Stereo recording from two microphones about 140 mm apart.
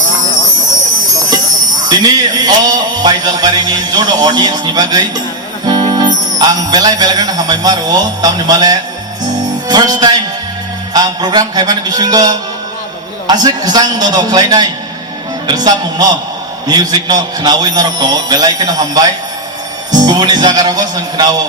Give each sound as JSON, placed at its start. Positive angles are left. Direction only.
{"t": 1.8, "sound": "speech", "side_deg": -30}
{"t": 9.4, "sound": "music", "side_deg": -30}
{"t": 10.9, "sound": "speech", "side_deg": -30}